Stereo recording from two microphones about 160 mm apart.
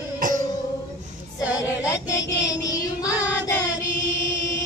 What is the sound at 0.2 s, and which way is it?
Music, 55° right (ahead or behind).